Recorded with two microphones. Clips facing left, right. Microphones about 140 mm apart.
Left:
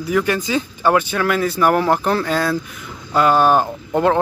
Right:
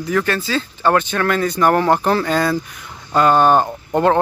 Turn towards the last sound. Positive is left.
turn(degrees=0)  # may be behind; listen again after turning